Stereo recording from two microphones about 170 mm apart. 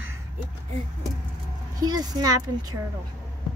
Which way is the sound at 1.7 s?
25° right (ahead or behind).